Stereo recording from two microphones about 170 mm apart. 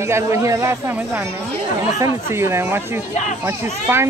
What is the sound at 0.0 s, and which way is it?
Speech, 15° right (ahead or behind).